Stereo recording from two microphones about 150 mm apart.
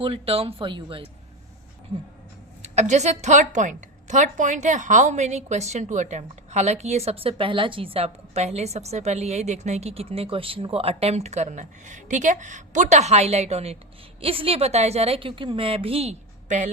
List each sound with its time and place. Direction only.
0.0 s a woman's voice: 40° right (ahead or behind)
2.6 s a woman's voice: 50° right (ahead or behind)